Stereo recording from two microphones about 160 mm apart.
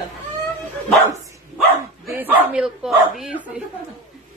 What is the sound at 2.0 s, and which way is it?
Speech, 10° right (ahead or behind).